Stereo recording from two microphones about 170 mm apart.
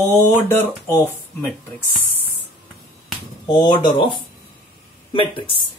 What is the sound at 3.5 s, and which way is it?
Speech, 25° left (ahead or behind).